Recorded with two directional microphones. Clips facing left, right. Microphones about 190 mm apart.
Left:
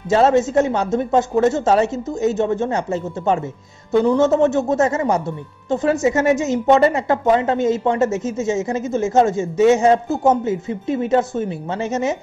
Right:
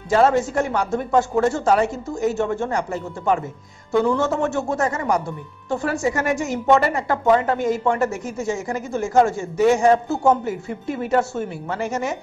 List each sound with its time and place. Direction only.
0.1 s speech: 25° left (ahead or behind)